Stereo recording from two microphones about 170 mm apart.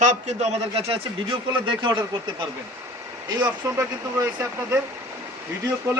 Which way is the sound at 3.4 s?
20° right (ahead or behind).